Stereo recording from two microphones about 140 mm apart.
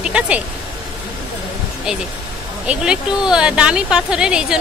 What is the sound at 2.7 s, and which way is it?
Speech, 5° right (ahead or behind).